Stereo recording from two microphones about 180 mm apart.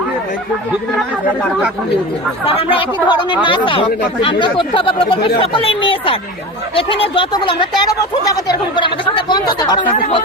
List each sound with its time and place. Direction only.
2.6 s speech: 30° left (ahead or behind)